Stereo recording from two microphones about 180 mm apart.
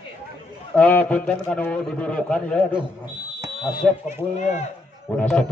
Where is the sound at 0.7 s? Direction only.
10° left (ahead or behind).